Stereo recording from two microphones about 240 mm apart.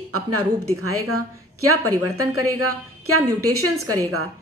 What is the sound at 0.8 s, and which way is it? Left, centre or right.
A woman's voice, right.